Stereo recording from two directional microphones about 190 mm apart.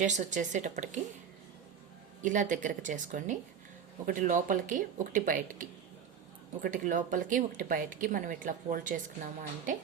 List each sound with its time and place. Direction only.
0.0 s a woman's voice: 40° right (ahead or behind)
2.2 s speech: 45° right (ahead or behind)